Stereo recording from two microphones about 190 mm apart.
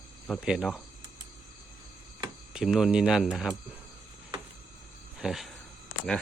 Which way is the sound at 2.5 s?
Centre (ahead or behind).